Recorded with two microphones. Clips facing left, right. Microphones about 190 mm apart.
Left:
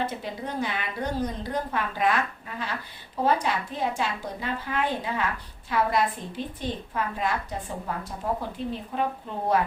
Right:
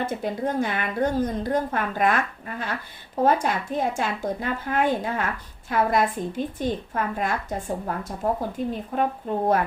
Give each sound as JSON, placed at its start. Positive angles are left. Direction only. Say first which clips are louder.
{"t": 0.0, "sound": "a woman's voice", "louder": "right 5 dB", "side_deg": -50}